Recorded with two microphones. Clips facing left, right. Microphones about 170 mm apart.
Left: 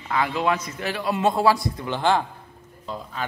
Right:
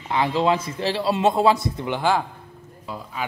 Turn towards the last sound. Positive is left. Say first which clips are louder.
# left 1 dB
turn(degrees=-10)  # may be behind; listen again after turning